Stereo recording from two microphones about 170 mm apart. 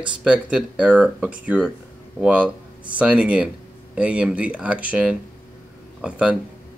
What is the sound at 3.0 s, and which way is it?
Speech, 5° right (ahead or behind).